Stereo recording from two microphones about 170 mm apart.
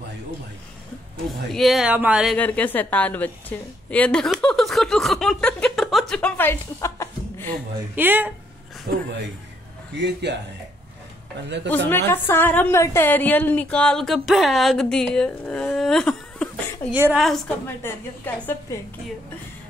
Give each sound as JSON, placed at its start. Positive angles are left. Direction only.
{"t": 1.5, "sound": "a woman's voice", "side_deg": 0}
{"t": 2.3, "sound": "a sound", "side_deg": 10}
{"t": 7.9, "sound": "speech", "side_deg": -10}
{"t": 9.9, "sound": "speech", "side_deg": -90}
{"t": 11.4, "sound": "speech", "side_deg": -90}
{"t": 11.7, "sound": "a woman's voice", "side_deg": 15}
{"t": 16.9, "sound": "speech", "side_deg": -10}
{"t": 17.8, "sound": "a woman's voice", "side_deg": 15}